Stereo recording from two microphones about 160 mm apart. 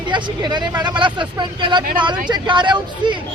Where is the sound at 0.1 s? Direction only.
30° right (ahead or behind).